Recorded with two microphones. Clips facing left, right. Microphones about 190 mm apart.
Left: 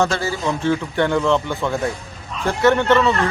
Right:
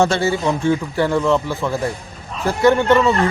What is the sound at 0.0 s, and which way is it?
Speech, 25° right (ahead or behind).